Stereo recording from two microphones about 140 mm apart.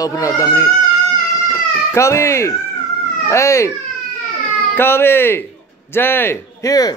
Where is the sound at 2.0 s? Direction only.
20° left (ahead or behind).